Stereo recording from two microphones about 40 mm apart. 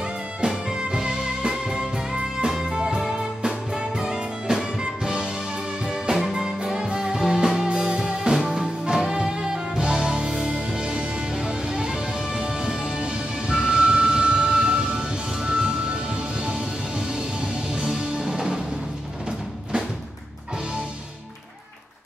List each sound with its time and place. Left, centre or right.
0.0 s music: centre
3.0 s music: centre
3.7 s music: centre
6.1 s music: centre
17.7 s music: right